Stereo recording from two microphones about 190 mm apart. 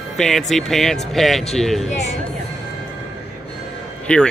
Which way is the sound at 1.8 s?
35° left (ahead or behind).